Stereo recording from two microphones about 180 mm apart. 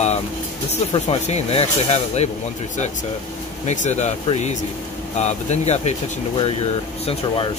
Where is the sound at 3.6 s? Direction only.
40° left (ahead or behind).